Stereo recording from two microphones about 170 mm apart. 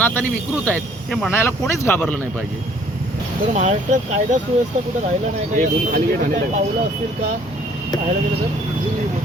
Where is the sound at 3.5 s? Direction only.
45° right (ahead or behind).